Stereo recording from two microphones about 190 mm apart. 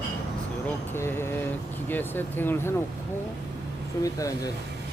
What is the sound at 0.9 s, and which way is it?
Speech, 15° left (ahead or behind).